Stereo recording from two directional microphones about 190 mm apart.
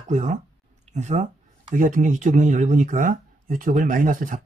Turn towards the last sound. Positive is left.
turn(degrees=-45)  # may be behind; listen again after turning